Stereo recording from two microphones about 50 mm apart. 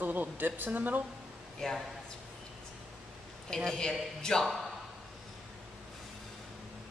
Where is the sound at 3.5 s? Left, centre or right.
Centre.